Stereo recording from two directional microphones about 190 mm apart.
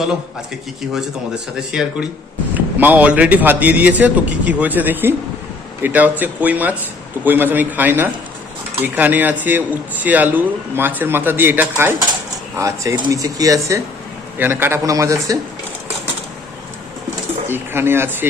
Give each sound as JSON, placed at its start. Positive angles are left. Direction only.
{"t": 1.5, "sound": "a man's voice", "side_deg": -5}
{"t": 17.4, "sound": "speech", "side_deg": -10}